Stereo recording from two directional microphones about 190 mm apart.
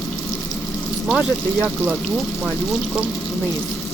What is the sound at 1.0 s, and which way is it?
Speech, 5° right (ahead or behind).